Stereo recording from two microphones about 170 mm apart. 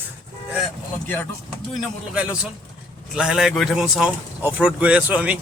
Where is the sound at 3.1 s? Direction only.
5° right (ahead or behind).